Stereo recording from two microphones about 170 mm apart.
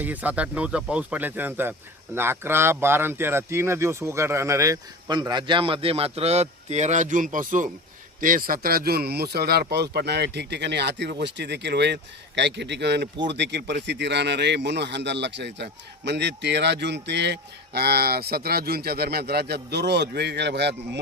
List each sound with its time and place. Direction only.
0.0 s a man's voice: 10° right (ahead or behind); by 21.0 s 90° right